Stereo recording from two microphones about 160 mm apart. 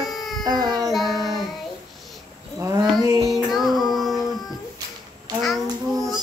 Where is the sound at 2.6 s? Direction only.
20° right (ahead or behind).